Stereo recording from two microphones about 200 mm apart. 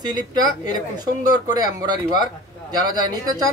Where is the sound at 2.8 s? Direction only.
20° right (ahead or behind).